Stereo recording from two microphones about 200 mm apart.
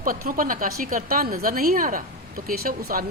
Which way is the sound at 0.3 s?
45° right (ahead or behind).